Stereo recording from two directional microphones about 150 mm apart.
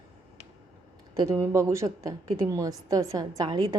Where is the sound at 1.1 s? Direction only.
20° right (ahead or behind).